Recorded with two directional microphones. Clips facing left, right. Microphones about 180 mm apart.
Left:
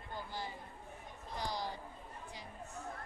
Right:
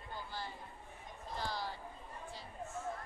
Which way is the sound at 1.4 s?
15° left (ahead or behind).